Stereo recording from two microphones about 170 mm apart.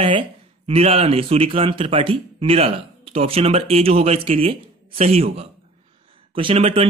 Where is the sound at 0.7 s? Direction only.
35° right (ahead or behind).